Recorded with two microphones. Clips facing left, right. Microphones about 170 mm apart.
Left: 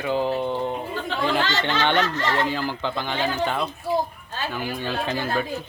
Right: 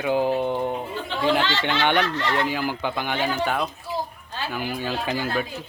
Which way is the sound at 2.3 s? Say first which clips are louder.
Even; 10° right (ahead or behind).